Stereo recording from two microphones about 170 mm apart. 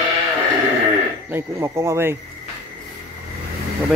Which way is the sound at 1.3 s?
15° right (ahead or behind).